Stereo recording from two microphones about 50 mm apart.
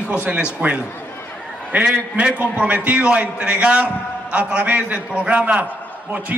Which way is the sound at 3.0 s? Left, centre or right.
Right.